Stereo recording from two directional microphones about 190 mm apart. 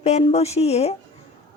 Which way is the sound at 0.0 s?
35° left (ahead or behind).